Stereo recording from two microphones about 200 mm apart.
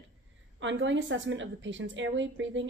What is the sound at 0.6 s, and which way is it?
A woman's voice, 65° right (ahead or behind).